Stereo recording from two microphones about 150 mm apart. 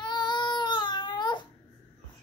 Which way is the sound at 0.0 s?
30° left (ahead or behind).